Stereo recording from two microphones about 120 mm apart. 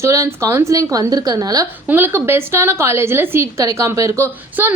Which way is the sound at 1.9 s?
20° right (ahead or behind).